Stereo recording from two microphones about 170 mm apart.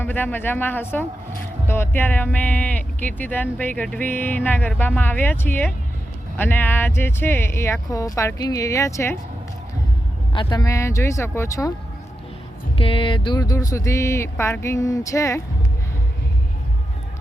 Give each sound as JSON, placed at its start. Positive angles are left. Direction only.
{"t": 0.0, "sound": "speech", "side_deg": 10}
{"t": 10.3, "sound": "speech", "side_deg": 20}
{"t": 12.7, "sound": "speech", "side_deg": 30}